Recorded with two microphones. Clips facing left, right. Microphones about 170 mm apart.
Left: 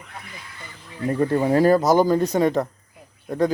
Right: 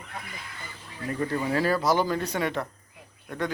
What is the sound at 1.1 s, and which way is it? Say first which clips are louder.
Speech: left 8 dB; 40° left (ahead or behind).